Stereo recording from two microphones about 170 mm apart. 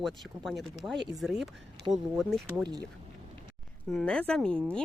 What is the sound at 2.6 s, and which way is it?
Speech, 25° right (ahead or behind).